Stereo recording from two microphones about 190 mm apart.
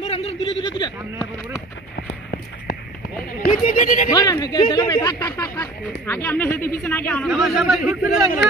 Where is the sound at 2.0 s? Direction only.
50° left (ahead or behind).